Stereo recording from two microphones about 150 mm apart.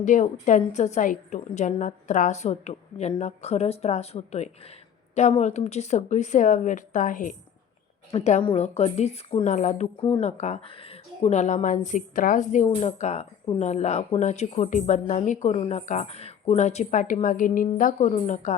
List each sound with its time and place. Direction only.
0.0 s a woman's voice: 55° left (ahead or behind)
8.1 s a woman's voice: 45° left (ahead or behind)